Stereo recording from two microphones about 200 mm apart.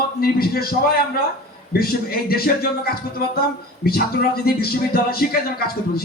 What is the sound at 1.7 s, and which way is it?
Speech, 50° left (ahead or behind).